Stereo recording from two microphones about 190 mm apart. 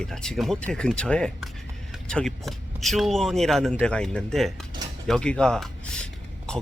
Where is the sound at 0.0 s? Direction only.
5° left (ahead or behind).